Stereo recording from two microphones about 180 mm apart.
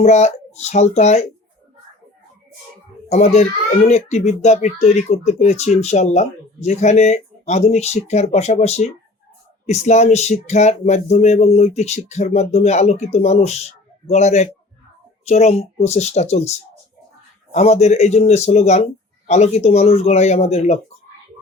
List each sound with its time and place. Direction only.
0.0 s speech: 40° left (ahead or behind)
3.1 s speech: 35° left (ahead or behind)